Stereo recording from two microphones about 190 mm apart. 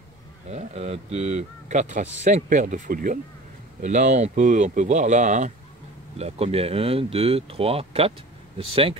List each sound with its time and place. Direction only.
0.5 s speech: 35° right (ahead or behind)